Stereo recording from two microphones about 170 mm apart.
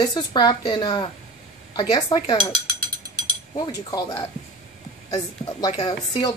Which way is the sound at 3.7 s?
20° left (ahead or behind).